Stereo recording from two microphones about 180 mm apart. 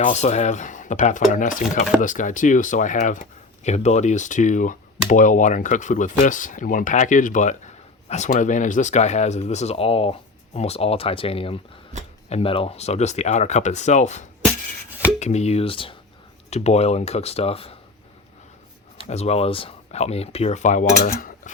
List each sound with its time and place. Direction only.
0.0 s speech: 40° left (ahead or behind)
11.9 s speech: 40° right (ahead or behind)
12.3 s speech: 30° left (ahead or behind)
19.0 s speech: 35° left (ahead or behind)